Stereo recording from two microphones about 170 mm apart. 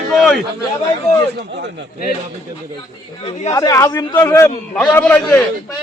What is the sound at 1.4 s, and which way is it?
Speech, 85° right.